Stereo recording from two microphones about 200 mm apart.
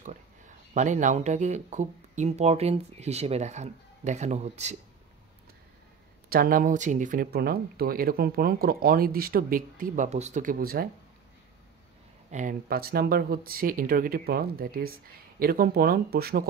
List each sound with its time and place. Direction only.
0.7 s speech: 40° right (ahead or behind)
6.2 s speech: 45° right (ahead or behind)
12.3 s speech: 40° right (ahead or behind)